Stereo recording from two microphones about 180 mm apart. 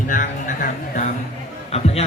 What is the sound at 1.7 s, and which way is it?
Speech, 35° left (ahead or behind).